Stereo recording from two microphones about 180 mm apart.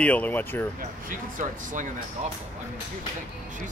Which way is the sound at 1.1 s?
45° right (ahead or behind).